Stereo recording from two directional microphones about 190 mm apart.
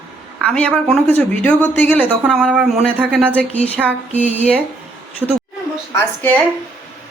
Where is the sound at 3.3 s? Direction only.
5° left (ahead or behind).